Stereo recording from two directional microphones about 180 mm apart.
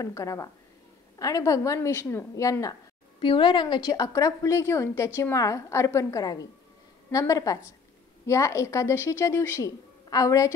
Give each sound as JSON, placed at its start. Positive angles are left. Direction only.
{"t": 0.0, "sound": "a woman's voice", "side_deg": 15}